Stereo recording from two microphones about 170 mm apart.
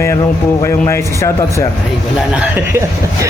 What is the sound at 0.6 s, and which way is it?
Speech, 15° left (ahead or behind).